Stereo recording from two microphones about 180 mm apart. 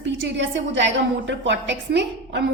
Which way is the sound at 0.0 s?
90° right.